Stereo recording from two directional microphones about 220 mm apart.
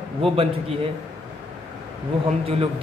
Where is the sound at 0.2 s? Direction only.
25° right (ahead or behind).